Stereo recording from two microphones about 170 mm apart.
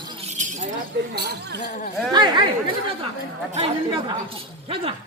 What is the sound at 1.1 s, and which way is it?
Speech, 75° right (ahead or behind).